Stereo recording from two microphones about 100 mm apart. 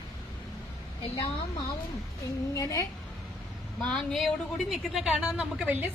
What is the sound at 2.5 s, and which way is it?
Speech, 35° left (ahead or behind).